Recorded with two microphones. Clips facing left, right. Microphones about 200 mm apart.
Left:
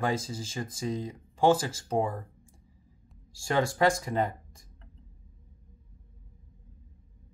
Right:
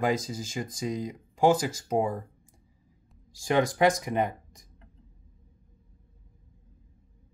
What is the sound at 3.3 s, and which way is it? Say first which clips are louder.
Speech: right 3 dB; 20° right (ahead or behind).